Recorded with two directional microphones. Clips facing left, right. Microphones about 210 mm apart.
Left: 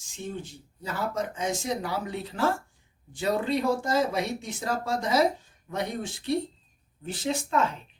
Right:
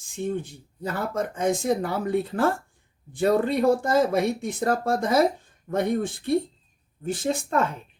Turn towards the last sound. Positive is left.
turn(degrees=-55)  # may be behind; listen again after turning